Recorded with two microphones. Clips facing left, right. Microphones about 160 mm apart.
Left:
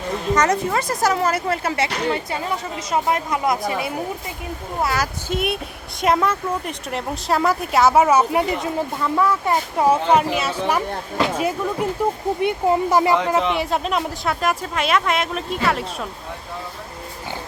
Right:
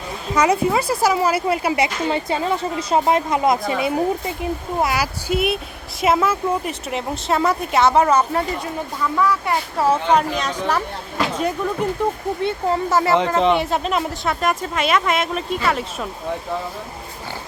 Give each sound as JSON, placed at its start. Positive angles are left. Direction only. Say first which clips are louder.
{"t": 0.3, "sound": "a woman's voice", "louder": "right 4 dB", "side_deg": -10}
{"t": 4.8, "sound": "speech", "louder": "even", "side_deg": -10}
{"t": 12.4, "sound": "speech", "louder": "left 3 dB", "side_deg": 15}
{"t": 13.5, "sound": "speech", "louder": "right 3 dB", "side_deg": 0}